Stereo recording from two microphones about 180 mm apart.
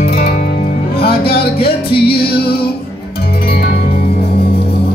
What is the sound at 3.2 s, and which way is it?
Music, 55° left (ahead or behind).